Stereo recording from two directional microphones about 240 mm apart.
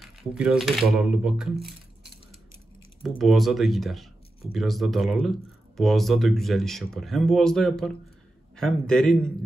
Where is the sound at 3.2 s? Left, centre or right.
Centre.